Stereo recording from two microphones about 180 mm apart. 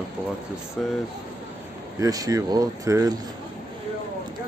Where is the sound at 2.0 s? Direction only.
20° right (ahead or behind).